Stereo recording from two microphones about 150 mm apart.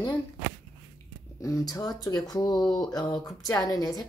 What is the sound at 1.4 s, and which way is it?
A woman's voice, 20° left (ahead or behind).